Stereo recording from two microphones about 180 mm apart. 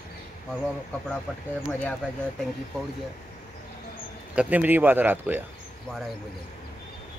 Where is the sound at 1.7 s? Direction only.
10° left (ahead or behind).